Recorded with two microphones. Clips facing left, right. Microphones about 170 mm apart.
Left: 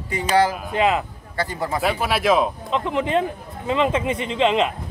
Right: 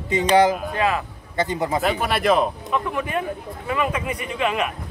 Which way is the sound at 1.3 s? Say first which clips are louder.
Right 3 dB; 20° right (ahead or behind).